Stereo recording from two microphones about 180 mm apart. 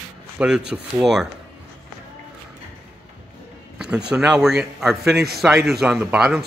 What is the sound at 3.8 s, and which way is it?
A man's voice, 5° right (ahead or behind).